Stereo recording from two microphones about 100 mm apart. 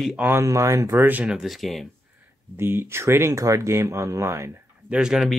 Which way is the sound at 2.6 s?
25° right (ahead or behind).